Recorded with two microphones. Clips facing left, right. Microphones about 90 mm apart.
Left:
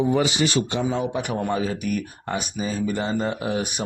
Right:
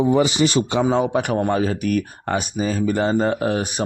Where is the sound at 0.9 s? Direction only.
65° right (ahead or behind).